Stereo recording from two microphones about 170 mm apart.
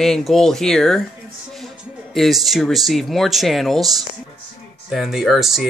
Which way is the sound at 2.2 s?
Centre (ahead or behind).